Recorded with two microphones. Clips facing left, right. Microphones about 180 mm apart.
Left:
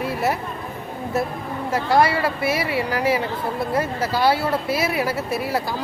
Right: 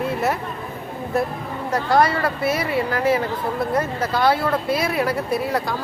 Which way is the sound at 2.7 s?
10° left (ahead or behind).